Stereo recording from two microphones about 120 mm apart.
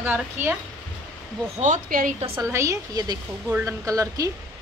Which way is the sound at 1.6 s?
80° right.